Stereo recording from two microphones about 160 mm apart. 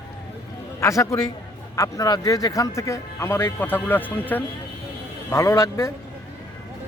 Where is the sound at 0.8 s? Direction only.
20° left (ahead or behind).